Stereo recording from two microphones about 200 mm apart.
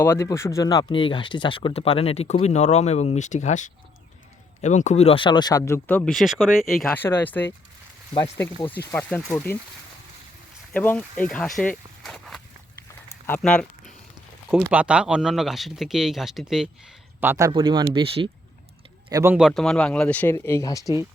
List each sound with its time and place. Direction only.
0.0 s speech: 15° left (ahead or behind)
8.9 s speech: 5° left (ahead or behind)
10.7 s speech: 5° left (ahead or behind)
12.0 s walk: centre (ahead or behind)
13.2 s speech: 10° left (ahead or behind)
14.5 s speech: 10° right (ahead or behind)
17.2 s speech: 15° right (ahead or behind)
19.2 s speech: 5° right (ahead or behind); by 20.8 s 15° left (ahead or behind)